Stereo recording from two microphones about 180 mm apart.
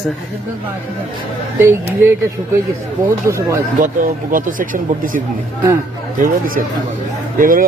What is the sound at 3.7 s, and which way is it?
Speech, 50° right (ahead or behind).